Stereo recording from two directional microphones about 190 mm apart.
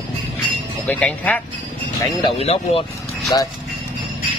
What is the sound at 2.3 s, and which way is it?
Speech, 30° left (ahead or behind).